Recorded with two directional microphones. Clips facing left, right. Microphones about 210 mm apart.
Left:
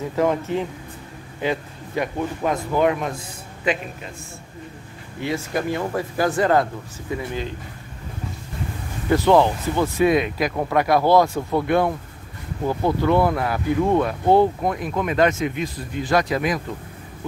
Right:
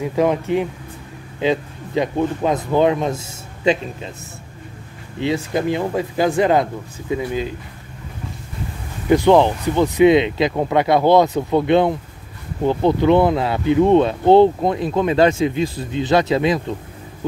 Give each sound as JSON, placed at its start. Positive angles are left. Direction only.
{"t": 0.0, "sound": "speech", "side_deg": -15}
{"t": 5.2, "sound": "speech", "side_deg": -20}
{"t": 9.1, "sound": "speech", "side_deg": -15}